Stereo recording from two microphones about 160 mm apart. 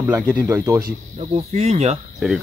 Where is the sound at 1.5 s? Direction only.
45° right (ahead or behind).